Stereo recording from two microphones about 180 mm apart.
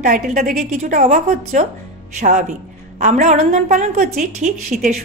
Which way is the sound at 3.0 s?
40° right (ahead or behind).